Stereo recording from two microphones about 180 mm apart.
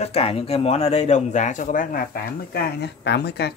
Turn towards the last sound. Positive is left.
turn(degrees=65)  # may be behind; listen again after turning